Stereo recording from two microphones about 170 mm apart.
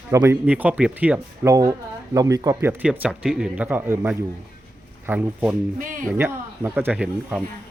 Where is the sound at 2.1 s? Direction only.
20° right (ahead or behind).